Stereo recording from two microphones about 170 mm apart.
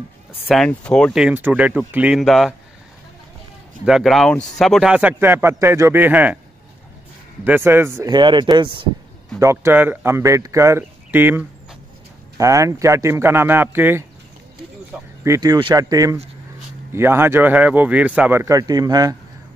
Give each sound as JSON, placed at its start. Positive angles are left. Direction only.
{"t": 0.5, "sound": "speech", "side_deg": 5}
{"t": 3.8, "sound": "speech", "side_deg": 0}
{"t": 7.4, "sound": "speech", "side_deg": -10}
{"t": 9.4, "sound": "speech", "side_deg": -15}